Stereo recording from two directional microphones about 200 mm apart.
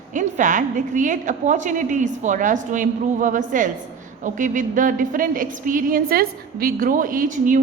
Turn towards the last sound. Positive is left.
turn(degrees=-40)  # may be behind; listen again after turning